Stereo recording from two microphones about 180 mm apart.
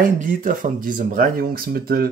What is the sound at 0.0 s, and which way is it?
Speech, 45° right (ahead or behind).